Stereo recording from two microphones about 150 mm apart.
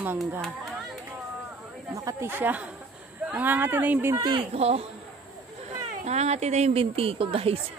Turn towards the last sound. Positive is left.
turn(degrees=-40)  # may be behind; listen again after turning